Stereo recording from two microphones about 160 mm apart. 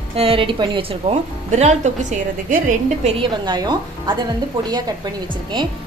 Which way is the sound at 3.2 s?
30° right (ahead or behind).